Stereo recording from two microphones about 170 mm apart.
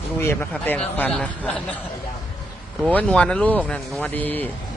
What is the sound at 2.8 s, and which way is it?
Speech, 5° left (ahead or behind).